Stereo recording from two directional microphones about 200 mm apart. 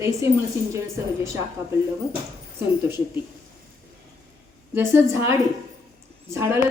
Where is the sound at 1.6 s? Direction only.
10° right (ahead or behind).